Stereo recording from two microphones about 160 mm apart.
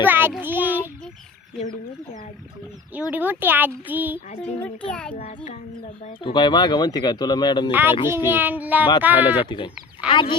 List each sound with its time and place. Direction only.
0.0 s a child's voice: 10° right (ahead or behind)
0.4 s child singing: 10° right (ahead or behind)
3.1 s child singing: 10° right (ahead or behind)
4.4 s a child's voice: 10° left (ahead or behind)
6.2 s speech: 30° left (ahead or behind)
7.7 s child singing: 10° right (ahead or behind)
9.5 s speech: 30° left (ahead or behind)